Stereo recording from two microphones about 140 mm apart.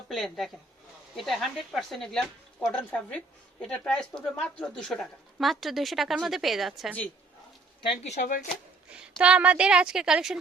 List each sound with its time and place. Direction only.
0.1 s speech: centre (ahead or behind)
7.8 s speech: 45° left (ahead or behind)
8.9 s speech: 5° right (ahead or behind)